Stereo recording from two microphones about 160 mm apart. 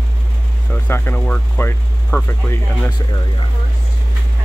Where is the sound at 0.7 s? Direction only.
10° left (ahead or behind).